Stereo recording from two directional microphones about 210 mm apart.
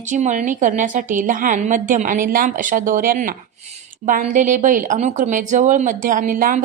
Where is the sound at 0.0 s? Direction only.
35° right (ahead or behind).